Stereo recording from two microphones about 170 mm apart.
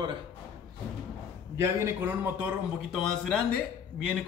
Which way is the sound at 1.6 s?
15° right (ahead or behind).